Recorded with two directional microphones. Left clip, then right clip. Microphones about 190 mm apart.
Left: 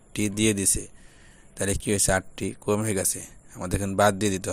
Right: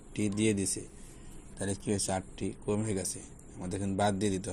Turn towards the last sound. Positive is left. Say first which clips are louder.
# left 9 dB
turn(degrees=60)  # may be behind; listen again after turning